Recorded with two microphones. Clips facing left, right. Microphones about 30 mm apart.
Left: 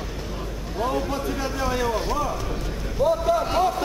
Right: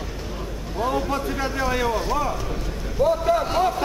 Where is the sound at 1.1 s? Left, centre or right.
Right.